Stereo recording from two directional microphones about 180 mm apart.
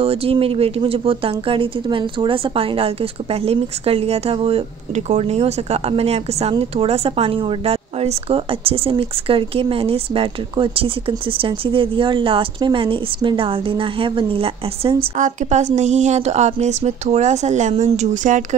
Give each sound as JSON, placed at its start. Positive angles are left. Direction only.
{"t": 0.0, "sound": "speech", "side_deg": -30}
{"t": 15.1, "sound": "speech", "side_deg": -45}